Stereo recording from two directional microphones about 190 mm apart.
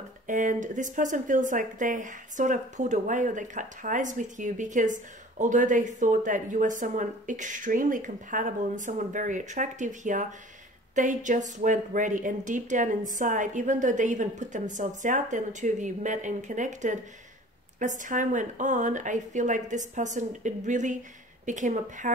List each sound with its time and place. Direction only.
0.3 s speech: 40° right (ahead or behind)